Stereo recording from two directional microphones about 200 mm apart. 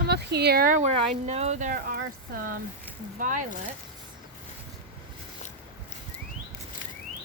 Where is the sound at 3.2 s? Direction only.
40° right (ahead or behind).